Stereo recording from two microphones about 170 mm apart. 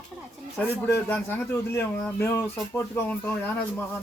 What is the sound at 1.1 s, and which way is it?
Speech, 10° left (ahead or behind).